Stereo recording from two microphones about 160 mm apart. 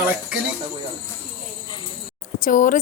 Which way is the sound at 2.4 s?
55° left (ahead or behind).